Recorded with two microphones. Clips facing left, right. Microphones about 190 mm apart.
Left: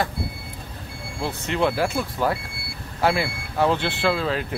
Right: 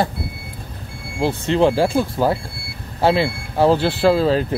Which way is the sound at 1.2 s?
30° right (ahead or behind).